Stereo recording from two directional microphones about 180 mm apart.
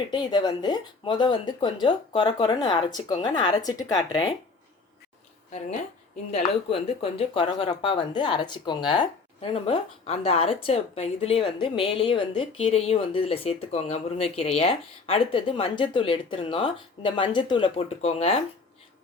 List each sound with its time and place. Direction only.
0.1 s speech: 25° left (ahead or behind)
6.3 s speech: 35° left (ahead or behind)